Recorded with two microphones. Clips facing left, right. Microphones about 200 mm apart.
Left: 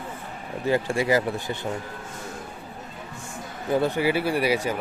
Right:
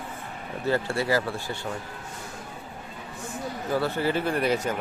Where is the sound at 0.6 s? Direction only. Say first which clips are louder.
Left 3 dB; 15° left (ahead or behind).